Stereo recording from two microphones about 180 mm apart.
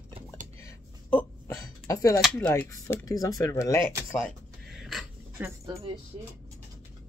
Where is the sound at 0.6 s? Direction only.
15° left (ahead or behind).